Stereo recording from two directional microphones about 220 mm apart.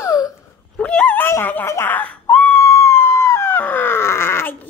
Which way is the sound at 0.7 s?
5° left (ahead or behind).